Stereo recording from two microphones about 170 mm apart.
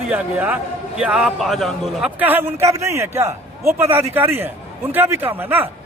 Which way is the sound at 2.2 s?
15° right (ahead or behind).